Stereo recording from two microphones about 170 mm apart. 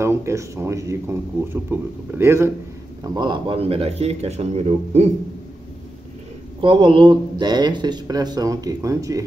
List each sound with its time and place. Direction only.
0.0 s speech: 15° right (ahead or behind)
3.0 s speech: 25° right (ahead or behind)
6.6 s speech: 30° right (ahead or behind)